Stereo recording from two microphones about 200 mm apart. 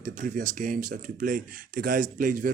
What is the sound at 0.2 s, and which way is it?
Speech, 40° right (ahead or behind).